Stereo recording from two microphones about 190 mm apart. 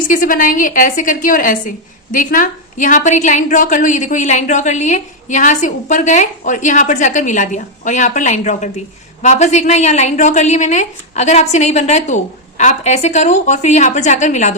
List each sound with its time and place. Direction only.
0.1 s a woman's voice: 45° left (ahead or behind)